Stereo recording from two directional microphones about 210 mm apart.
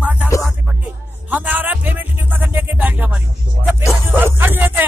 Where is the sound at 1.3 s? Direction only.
10° right (ahead or behind).